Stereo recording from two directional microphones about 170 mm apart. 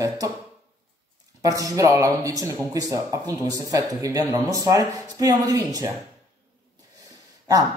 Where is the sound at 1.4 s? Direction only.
20° right (ahead or behind).